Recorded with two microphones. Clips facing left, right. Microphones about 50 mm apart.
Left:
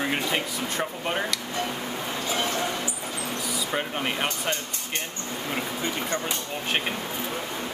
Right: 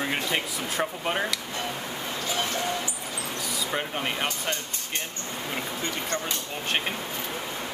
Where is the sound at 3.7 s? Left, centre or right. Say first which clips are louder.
Left 1 dB; centre.